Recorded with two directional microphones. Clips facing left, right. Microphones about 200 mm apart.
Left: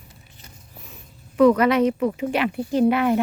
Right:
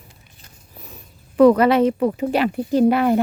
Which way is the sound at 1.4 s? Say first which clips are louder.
Right 3 dB; 35° right (ahead or behind).